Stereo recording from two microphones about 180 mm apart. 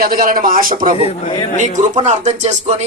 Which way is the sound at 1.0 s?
30° left (ahead or behind).